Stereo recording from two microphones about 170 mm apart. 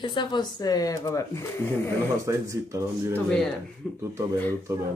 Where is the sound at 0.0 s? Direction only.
30° left (ahead or behind).